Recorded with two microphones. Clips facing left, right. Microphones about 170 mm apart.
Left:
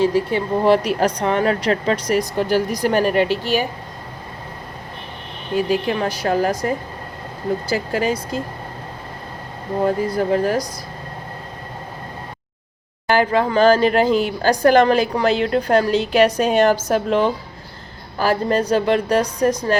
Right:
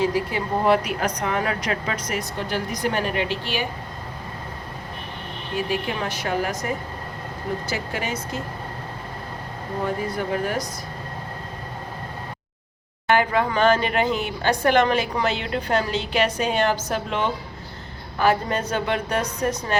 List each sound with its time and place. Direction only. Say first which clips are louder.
0.0 s speech: left 5 dB; 30° left (ahead or behind)
5.6 s speech: left 6 dB; 35° left (ahead or behind)
10.1 s speech: left 7 dB; 35° left (ahead or behind)
13.1 s speech: left 3 dB; 35° left (ahead or behind)